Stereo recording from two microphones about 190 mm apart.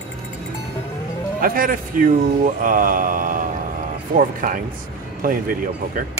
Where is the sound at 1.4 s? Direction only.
45° right (ahead or behind).